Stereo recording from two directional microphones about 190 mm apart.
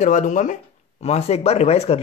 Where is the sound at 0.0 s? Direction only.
40° left (ahead or behind).